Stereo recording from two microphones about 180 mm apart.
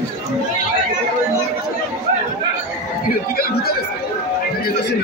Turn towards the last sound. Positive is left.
turn(degrees=60)  # may be behind; listen again after turning